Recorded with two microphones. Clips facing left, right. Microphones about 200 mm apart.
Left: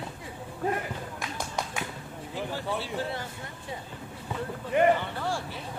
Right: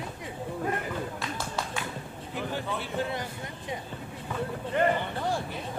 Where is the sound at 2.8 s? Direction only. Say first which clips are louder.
Right 1 dB; 20° right (ahead or behind).